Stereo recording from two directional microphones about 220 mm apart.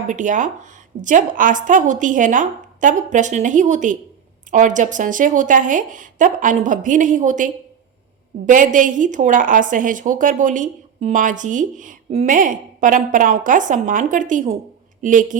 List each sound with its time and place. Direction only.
0.1 s a woman's voice: 35° right (ahead or behind)